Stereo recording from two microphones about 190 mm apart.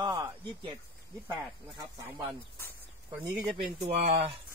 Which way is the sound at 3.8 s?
35° right (ahead or behind).